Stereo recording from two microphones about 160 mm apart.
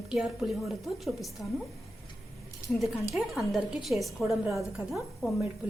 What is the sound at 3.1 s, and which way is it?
A woman's voice, centre (ahead or behind).